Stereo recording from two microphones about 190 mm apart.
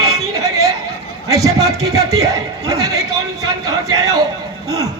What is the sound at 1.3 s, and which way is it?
A man's voice, 20° right (ahead or behind).